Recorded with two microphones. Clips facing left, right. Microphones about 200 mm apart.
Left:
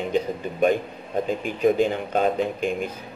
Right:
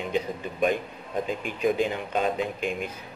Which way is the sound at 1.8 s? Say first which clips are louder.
Left 4 dB; 50° left (ahead or behind).